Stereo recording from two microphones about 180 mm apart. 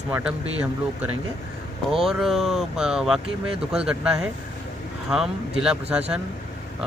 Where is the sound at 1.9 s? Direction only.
Centre (ahead or behind).